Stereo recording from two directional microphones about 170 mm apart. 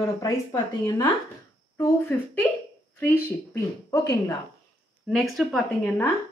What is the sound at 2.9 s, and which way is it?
A woman's voice, 15° left (ahead or behind).